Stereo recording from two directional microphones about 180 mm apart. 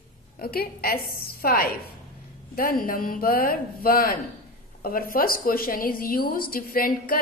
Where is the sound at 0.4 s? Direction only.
55° left (ahead or behind).